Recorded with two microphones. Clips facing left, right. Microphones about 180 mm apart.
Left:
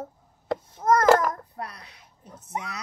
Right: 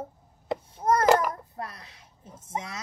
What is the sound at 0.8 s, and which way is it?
Child singing, 30° right (ahead or behind).